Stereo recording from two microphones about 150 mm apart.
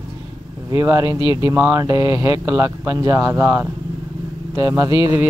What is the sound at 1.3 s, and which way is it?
Speech, 15° right (ahead or behind).